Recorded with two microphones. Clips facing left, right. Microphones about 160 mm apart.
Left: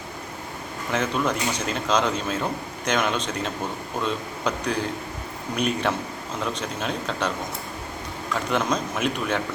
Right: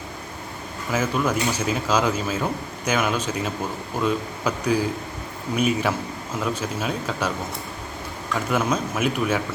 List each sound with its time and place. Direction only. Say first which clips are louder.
0.9 s speech: right 1 dB; 5° right (ahead or behind)